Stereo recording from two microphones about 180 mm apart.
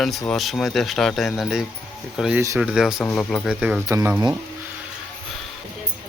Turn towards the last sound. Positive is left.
turn(degrees=-15)  # may be behind; listen again after turning